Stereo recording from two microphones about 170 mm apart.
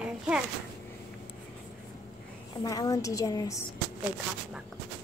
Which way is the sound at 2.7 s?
20° left (ahead or behind).